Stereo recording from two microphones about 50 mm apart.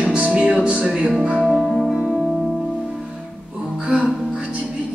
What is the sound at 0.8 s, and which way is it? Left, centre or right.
Music, centre.